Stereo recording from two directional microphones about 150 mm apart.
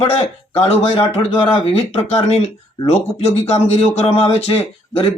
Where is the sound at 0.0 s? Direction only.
40° left (ahead or behind).